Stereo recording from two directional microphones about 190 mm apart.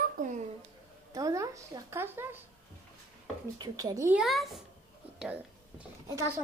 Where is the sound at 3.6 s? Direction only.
20° right (ahead or behind).